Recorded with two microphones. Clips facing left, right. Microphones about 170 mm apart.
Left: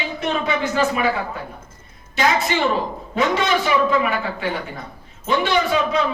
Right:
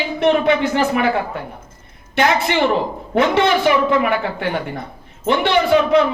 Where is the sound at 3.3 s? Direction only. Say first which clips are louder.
Right 4 dB; 65° right (ahead or behind).